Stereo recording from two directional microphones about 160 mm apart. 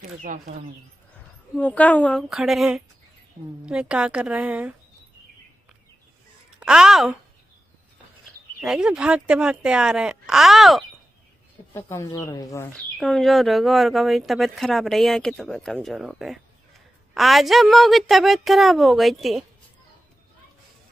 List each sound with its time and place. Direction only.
1.5 s a woman's voice: 10° left (ahead or behind)
2.2 s a woman's voice: centre (ahead or behind)
6.6 s speech: 5° right (ahead or behind)
8.5 s speech: 5° right (ahead or behind)
11.7 s speech: 15° left (ahead or behind)
12.7 s speech: 5° left (ahead or behind)